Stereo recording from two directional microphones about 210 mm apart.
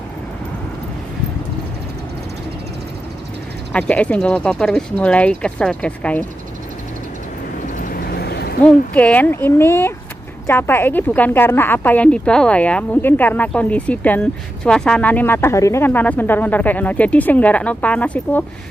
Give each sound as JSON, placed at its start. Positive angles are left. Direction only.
{"t": 3.7, "sound": "speech", "side_deg": 5}
{"t": 7.6, "sound": "vehicle", "side_deg": 40}
{"t": 8.6, "sound": "speech", "side_deg": 5}